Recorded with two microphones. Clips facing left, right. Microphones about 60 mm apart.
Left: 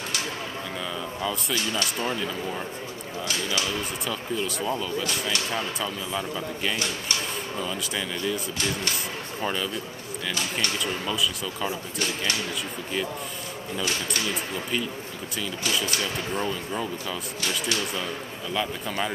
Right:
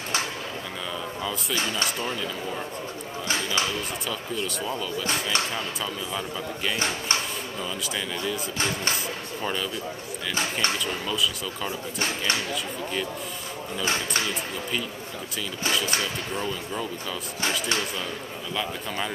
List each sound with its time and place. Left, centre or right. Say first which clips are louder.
1.5 s speech: right 2 dB; right
4.1 s speech: left 2 dB; centre
10.8 s speech: even; centre
17.4 s speech: right 2 dB; right
18.5 s speech: left 2 dB; centre